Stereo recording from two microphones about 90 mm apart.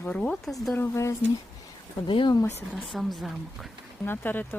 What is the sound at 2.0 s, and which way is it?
Speech, 65° left (ahead or behind).